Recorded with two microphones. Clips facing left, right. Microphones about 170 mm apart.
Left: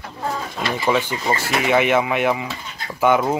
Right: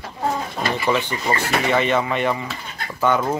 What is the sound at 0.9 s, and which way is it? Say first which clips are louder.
Speech: left 2 dB; 10° left (ahead or behind).